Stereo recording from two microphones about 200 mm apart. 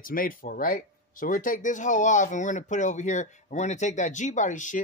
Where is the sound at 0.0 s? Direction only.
45° left (ahead or behind).